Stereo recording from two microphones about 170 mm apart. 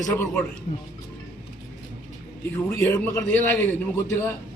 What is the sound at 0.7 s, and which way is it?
Speech, 45° left (ahead or behind).